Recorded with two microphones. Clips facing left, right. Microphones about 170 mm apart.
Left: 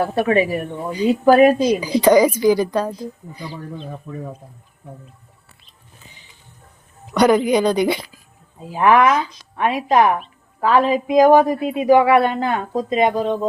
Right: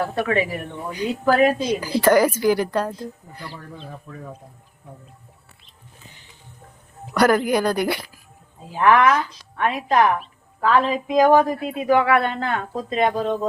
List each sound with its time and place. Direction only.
0.0 s a woman's voice: 25° left (ahead or behind)
7.1 s speech: centre (ahead or behind)
8.7 s speech: 10° left (ahead or behind)
11.3 s a woman's voice: 20° left (ahead or behind); by 13.5 s 5° left (ahead or behind)